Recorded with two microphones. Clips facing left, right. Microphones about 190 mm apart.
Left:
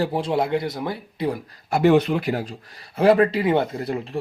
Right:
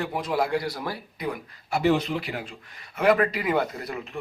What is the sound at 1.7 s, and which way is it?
Speech, 55° left (ahead or behind).